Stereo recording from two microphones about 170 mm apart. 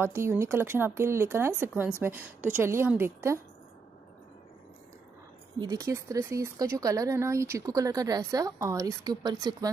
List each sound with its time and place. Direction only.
0.0 s a woman's voice: 15° right (ahead or behind)
5.6 s speech: 20° right (ahead or behind)